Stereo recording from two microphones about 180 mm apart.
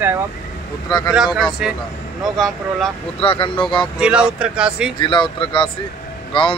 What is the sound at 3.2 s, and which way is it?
Speech, 30° left (ahead or behind).